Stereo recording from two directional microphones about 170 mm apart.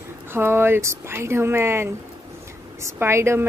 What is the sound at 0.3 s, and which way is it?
Speech, 15° right (ahead or behind).